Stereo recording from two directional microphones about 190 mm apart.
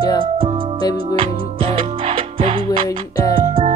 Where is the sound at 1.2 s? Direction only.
30° right (ahead or behind).